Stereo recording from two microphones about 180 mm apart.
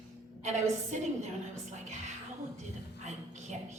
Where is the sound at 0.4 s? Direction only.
40° right (ahead or behind).